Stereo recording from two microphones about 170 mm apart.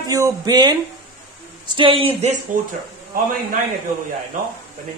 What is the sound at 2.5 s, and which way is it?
Speech, 55° right (ahead or behind).